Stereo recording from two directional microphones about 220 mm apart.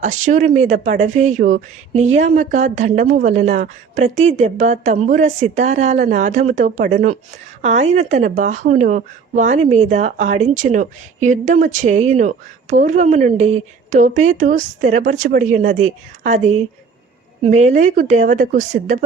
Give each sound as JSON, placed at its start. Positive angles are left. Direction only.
{"t": 0.0, "sound": "speech", "side_deg": -35}